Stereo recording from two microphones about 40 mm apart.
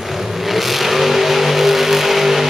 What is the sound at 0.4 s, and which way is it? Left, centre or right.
Vehicle, centre.